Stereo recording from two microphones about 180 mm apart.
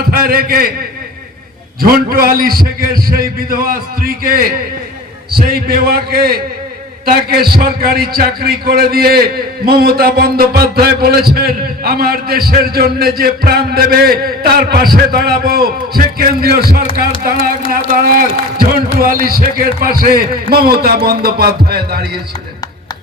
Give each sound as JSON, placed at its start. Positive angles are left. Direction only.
{"t": 0.0, "sound": "a man's voice", "side_deg": -55}
{"t": 1.8, "sound": "a man's voice", "side_deg": -55}